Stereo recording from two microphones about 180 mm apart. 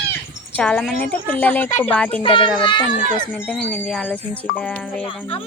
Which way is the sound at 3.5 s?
5° left (ahead or behind).